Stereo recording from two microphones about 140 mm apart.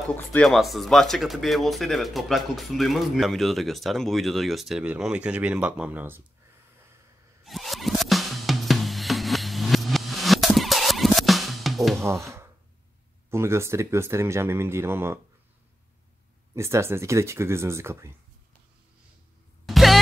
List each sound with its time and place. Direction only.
0.1 s speech: 15° left (ahead or behind)
0.5 s speech: centre (ahead or behind)
7.4 s music: centre (ahead or behind)
12.2 s speech: 20° right (ahead or behind)
16.5 s speech: 20° right (ahead or behind)
19.6 s music: centre (ahead or behind)